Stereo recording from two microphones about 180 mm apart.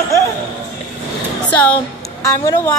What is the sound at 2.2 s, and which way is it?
Speech, 15° left (ahead or behind).